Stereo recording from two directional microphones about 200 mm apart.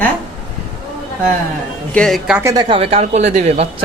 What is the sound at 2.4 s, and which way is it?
Speech, 15° right (ahead or behind).